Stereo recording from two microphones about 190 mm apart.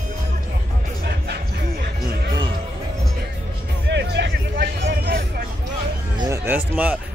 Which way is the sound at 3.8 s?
65° right (ahead or behind).